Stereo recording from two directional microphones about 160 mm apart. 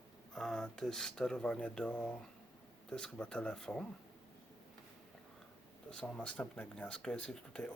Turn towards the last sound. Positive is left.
turn(degrees=5)  # may be behind; listen again after turning